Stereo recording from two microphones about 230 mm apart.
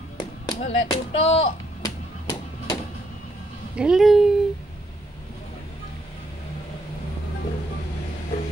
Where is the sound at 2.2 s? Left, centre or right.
Centre.